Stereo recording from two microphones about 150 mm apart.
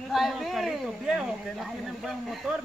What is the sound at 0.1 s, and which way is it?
Speech, centre (ahead or behind).